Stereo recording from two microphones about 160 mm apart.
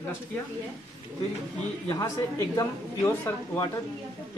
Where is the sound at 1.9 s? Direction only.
20° left (ahead or behind).